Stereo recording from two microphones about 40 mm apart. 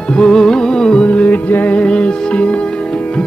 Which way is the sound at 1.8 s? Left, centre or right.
Left.